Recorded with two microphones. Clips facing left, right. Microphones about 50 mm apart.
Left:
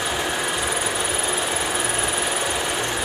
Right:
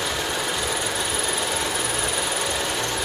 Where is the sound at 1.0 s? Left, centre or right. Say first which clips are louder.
Left 2 dB; left.